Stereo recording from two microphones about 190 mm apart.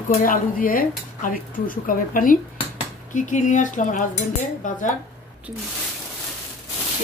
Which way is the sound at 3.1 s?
40° left (ahead or behind).